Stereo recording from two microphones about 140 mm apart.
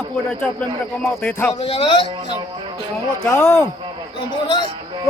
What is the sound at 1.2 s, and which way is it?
Speech, 10° left (ahead or behind).